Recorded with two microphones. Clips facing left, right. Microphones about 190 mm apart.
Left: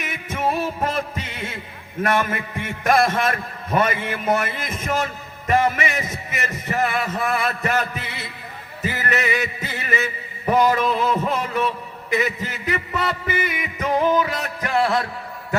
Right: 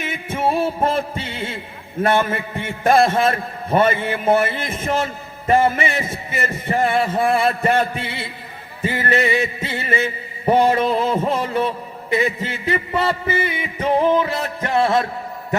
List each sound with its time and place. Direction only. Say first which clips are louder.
0.0 s music: right 3 dB; 30° right (ahead or behind)
2.0 s a man's voice: right 3 dB; 30° right (ahead or behind)